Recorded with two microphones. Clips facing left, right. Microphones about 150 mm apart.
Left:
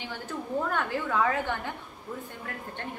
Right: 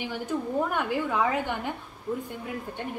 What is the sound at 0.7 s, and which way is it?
A woman's voice, 15° right (ahead or behind).